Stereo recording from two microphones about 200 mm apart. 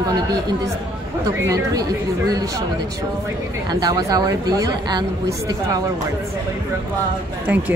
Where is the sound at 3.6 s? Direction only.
20° right (ahead or behind).